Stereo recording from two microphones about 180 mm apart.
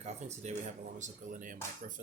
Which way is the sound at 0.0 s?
40° right (ahead or behind).